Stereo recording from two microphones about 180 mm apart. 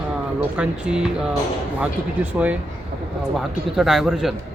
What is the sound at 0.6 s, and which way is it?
Speech, 5° right (ahead or behind).